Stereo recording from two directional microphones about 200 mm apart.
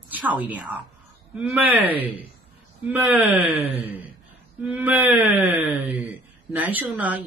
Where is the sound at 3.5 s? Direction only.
30° right (ahead or behind).